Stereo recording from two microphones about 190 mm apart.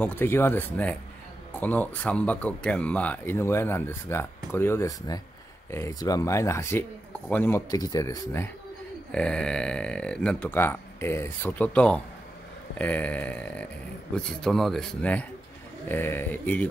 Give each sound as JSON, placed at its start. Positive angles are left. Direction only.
{"t": 0.0, "sound": "speech", "side_deg": 10}
{"t": 9.1, "sound": "speech", "side_deg": 5}